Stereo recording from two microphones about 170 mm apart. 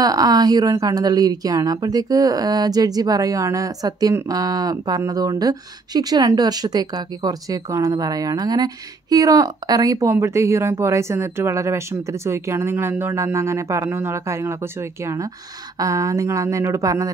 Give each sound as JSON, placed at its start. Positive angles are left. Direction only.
{"t": 0.0, "sound": "a woman's voice", "side_deg": -20}